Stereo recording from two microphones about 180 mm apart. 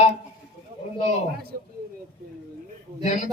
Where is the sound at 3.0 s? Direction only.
40° left (ahead or behind).